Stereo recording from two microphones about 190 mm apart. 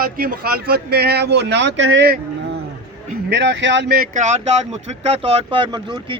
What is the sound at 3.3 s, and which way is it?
Speech, 70° right (ahead or behind).